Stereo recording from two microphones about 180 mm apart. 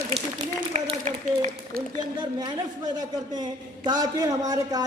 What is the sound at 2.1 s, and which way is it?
Speech, 25° right (ahead or behind).